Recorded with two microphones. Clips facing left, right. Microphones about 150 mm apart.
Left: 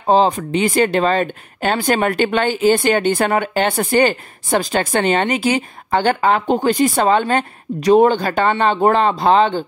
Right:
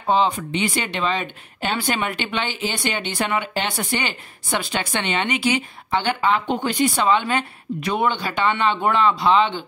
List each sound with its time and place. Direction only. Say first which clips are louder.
0.0 s speech: left 5 dB; 40° left (ahead or behind)